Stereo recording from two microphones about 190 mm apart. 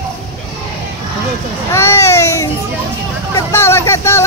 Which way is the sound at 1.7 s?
15° left (ahead or behind).